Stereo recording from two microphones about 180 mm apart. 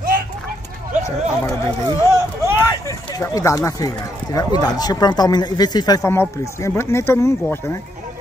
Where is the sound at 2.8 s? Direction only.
15° left (ahead or behind).